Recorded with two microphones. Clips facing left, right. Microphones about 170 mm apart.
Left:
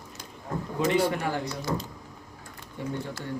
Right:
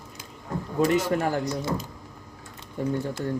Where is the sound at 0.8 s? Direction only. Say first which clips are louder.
Right 2 dB; 40° right (ahead or behind).